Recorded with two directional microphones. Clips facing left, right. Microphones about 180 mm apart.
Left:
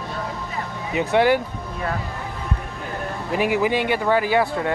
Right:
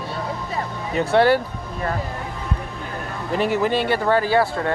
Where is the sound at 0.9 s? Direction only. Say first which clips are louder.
Right 1 dB; 15° left (ahead or behind).